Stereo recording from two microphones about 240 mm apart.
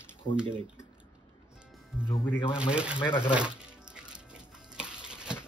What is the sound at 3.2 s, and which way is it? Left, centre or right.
Music, centre.